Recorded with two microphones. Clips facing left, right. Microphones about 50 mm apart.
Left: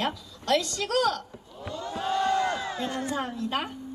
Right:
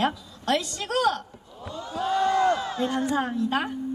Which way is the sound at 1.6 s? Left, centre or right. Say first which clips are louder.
Right 2 dB; left.